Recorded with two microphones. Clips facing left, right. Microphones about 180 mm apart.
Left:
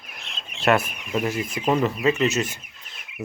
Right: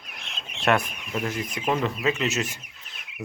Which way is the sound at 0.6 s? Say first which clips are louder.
Left 3 dB; centre (ahead or behind).